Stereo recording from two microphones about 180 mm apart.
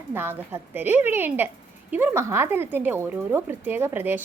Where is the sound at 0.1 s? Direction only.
10° right (ahead or behind).